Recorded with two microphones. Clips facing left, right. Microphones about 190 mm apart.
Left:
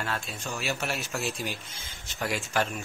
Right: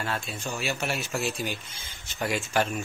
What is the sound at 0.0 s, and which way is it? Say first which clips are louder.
A man's voice: right 2 dB; centre (ahead or behind).